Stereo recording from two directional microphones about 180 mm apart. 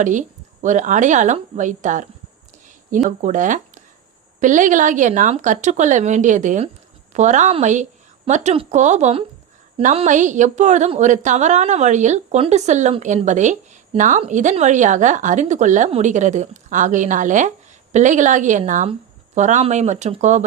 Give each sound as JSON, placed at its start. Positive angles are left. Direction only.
{"t": 0.0, "sound": "a woman's voice", "side_deg": -45}